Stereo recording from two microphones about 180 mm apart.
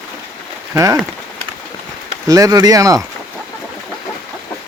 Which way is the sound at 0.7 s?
20° right (ahead or behind).